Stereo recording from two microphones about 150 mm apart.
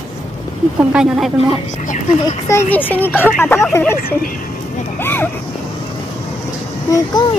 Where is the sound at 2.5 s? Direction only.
15° left (ahead or behind).